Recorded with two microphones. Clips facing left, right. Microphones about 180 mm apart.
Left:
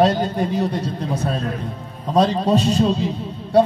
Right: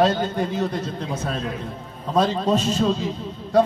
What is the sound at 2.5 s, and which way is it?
Speech, 15° left (ahead or behind).